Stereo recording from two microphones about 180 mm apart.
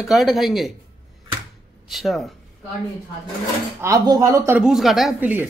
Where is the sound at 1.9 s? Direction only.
Centre (ahead or behind).